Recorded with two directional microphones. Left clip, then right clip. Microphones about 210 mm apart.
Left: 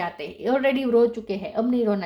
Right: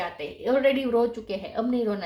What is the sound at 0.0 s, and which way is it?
Speech, 45° left (ahead or behind).